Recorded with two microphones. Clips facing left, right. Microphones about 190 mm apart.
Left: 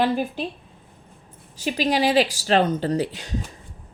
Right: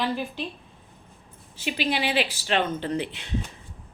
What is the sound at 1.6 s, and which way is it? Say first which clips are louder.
Speech: left 5 dB; 40° left (ahead or behind).